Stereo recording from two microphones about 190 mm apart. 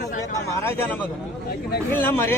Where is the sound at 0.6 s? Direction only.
10° left (ahead or behind).